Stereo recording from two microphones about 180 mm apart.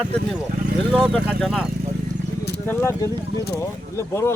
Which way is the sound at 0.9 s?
5° left (ahead or behind).